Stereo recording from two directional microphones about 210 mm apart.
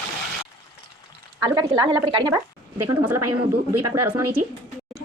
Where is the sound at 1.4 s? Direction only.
15° right (ahead or behind).